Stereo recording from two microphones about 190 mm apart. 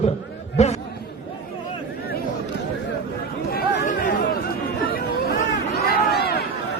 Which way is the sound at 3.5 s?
45° left (ahead or behind).